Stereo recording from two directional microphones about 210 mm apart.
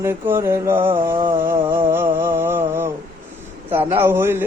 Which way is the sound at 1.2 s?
25° right (ahead or behind).